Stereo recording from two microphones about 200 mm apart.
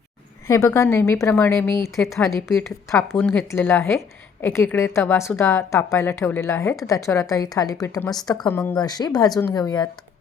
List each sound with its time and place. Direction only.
0.4 s a woman's voice: 15° left (ahead or behind)